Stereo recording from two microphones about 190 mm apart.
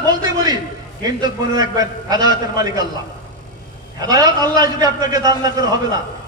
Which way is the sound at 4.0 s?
20° right (ahead or behind).